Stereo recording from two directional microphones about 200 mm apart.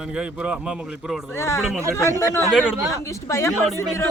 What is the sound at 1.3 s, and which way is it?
Speech, 15° left (ahead or behind).